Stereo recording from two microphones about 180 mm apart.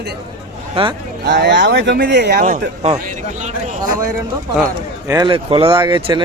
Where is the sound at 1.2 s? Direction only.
70° right (ahead or behind).